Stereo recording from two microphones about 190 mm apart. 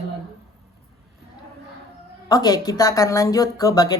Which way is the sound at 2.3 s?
20° left (ahead or behind).